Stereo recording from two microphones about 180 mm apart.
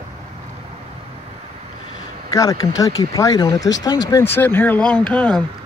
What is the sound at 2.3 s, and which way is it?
Speech, 20° left (ahead or behind).